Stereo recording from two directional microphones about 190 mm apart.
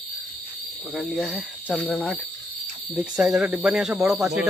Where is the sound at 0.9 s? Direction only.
Centre (ahead or behind).